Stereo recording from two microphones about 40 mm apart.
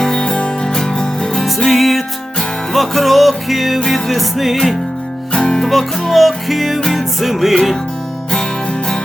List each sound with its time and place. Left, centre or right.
0.0 s music: centre
1.5 s music: centre
5.3 s music: centre
5.6 s music: centre